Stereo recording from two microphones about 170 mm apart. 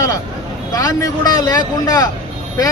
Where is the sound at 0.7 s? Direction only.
20° left (ahead or behind).